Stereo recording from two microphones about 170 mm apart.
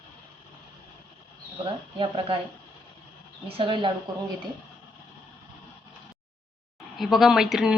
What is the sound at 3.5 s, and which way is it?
Speech, 30° right (ahead or behind).